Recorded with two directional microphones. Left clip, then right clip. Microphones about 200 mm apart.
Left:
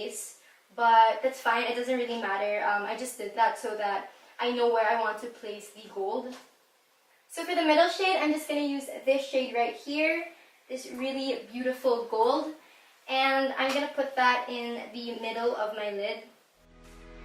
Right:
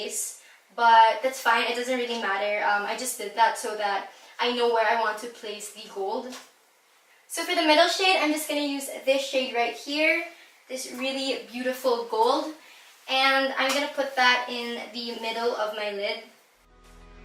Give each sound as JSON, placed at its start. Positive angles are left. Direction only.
{"t": 0.8, "sound": "a woman's voice", "side_deg": 5}
{"t": 5.9, "sound": "speech", "side_deg": 25}
{"t": 7.3, "sound": "a woman's voice", "side_deg": 5}